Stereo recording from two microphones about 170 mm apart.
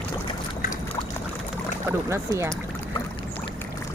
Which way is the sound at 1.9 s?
15° right (ahead or behind).